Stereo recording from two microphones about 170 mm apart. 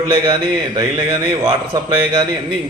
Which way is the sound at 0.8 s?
25° right (ahead or behind).